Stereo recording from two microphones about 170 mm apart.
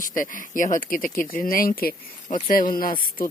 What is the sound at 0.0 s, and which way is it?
Speech, 50° left (ahead or behind).